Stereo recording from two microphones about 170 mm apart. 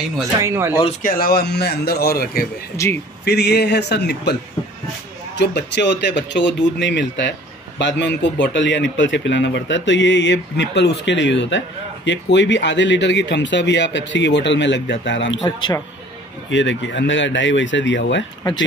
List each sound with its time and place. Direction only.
0.4 s speech: 15° right (ahead or behind)
1.0 s speech: 60° left (ahead or behind)
2.8 s speech: 15° left (ahead or behind)
3.3 s a man's voice: 75° left (ahead or behind)
5.3 s speech: 85° left
15.4 s speech: 25° left (ahead or behind)
16.4 s speech: 90° left